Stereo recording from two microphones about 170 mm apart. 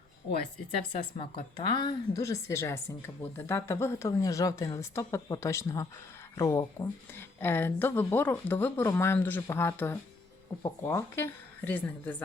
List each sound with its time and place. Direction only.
0.9 s a woman's voice: 35° left (ahead or behind); by 12.1 s 10° left (ahead or behind)